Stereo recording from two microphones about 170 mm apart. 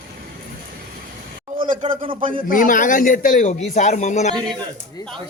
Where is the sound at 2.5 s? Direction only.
55° left (ahead or behind).